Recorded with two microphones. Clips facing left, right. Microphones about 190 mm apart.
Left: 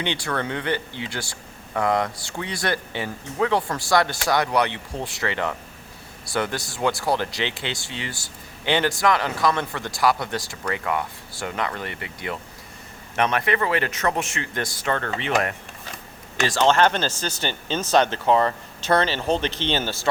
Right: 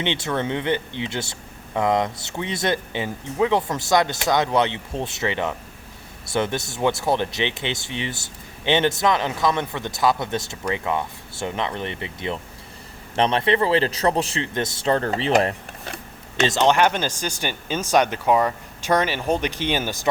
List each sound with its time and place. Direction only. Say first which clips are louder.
0.0 s speech: right 2 dB; 20° right (ahead or behind)
16.4 s speech: right 1 dB; 20° right (ahead or behind)